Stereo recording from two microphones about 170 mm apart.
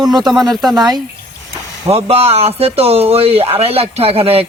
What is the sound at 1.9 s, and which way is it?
A man's voice, 35° right (ahead or behind).